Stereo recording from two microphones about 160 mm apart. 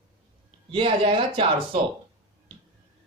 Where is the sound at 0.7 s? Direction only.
35° right (ahead or behind).